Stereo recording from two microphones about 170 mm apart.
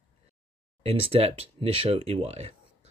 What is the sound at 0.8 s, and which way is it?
Speech, 35° right (ahead or behind).